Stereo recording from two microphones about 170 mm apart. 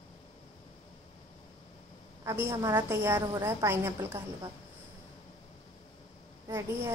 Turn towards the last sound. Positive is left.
turn(degrees=-20)  # may be behind; listen again after turning